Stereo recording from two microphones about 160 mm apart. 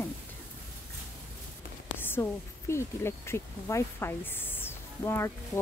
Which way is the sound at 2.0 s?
15° left (ahead or behind).